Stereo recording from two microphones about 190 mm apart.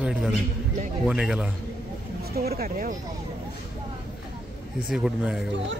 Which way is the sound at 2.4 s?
55° right (ahead or behind).